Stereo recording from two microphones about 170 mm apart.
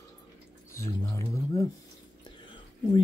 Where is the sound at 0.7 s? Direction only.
15° left (ahead or behind).